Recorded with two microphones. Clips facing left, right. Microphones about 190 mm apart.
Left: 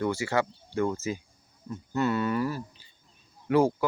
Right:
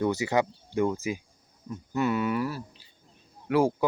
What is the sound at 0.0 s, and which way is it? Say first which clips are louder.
Speech: right 2 dB; 20° right (ahead or behind).